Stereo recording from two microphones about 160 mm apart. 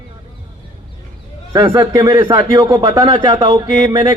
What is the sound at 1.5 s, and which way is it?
Speech, 30° right (ahead or behind).